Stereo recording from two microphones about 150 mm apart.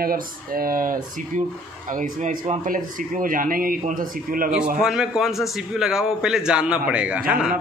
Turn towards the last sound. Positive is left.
turn(degrees=-5)  # may be behind; listen again after turning